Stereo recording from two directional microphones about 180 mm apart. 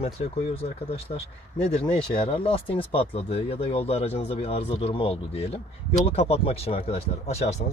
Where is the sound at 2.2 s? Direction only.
30° left (ahead or behind).